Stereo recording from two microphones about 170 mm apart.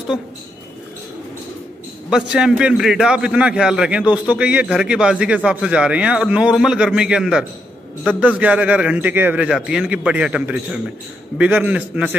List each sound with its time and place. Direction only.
2.0 s a man's voice: 5° right (ahead or behind)